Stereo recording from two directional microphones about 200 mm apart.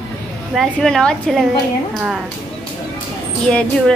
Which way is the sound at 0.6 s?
5° left (ahead or behind).